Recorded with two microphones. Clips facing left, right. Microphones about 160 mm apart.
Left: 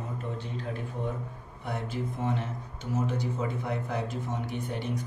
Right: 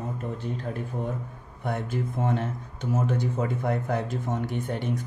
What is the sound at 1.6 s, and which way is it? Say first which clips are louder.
Speech: right 4 dB; 50° right (ahead or behind).